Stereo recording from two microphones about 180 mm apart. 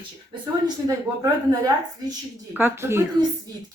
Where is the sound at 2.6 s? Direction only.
15° right (ahead or behind).